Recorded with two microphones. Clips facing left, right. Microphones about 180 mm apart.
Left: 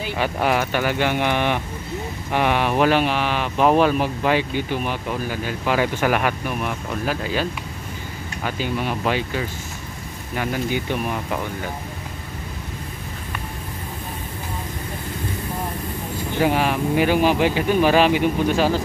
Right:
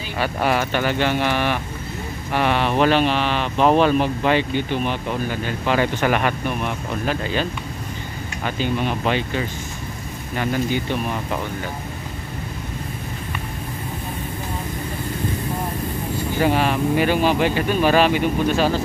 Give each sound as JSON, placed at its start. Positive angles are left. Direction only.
{"t": 0.2, "sound": "speech", "side_deg": 10}
{"t": 8.5, "sound": "speech", "side_deg": 5}
{"t": 16.4, "sound": "speech", "side_deg": 10}